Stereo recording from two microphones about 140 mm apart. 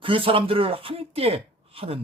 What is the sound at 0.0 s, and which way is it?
Speech, 40° right (ahead or behind).